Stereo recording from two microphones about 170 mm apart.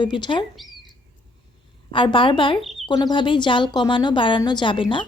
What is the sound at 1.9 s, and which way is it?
Speech, 30° left (ahead or behind).